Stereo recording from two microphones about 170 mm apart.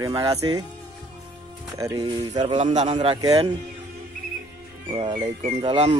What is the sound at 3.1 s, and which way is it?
Speech, 20° right (ahead or behind).